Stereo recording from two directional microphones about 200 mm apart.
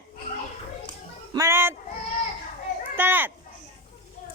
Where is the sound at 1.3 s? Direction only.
15° right (ahead or behind).